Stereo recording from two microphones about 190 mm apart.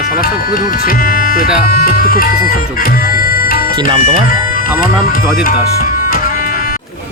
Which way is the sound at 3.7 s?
30° right (ahead or behind).